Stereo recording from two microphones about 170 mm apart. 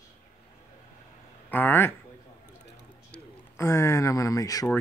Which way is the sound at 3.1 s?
15° left (ahead or behind).